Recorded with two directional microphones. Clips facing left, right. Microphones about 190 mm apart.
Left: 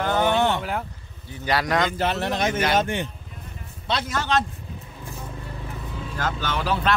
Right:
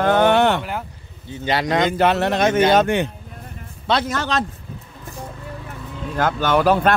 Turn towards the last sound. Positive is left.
turn(degrees=-50)  # may be behind; listen again after turning